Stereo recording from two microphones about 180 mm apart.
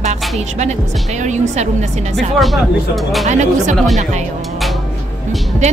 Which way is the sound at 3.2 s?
40° right (ahead or behind).